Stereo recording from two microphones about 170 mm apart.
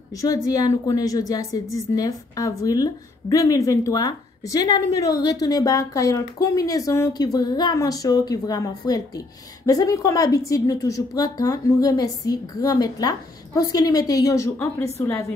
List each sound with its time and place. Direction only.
0.5 s a woman's voice: 20° left (ahead or behind)